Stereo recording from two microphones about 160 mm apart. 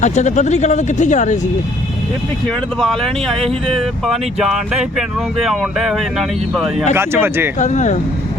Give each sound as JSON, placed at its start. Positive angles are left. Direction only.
{"t": 0.0, "sound": "speech", "side_deg": 45}
{"t": 2.5, "sound": "speech", "side_deg": 0}
{"t": 6.9, "sound": "speech", "side_deg": -15}
{"t": 7.6, "sound": "speech", "side_deg": 50}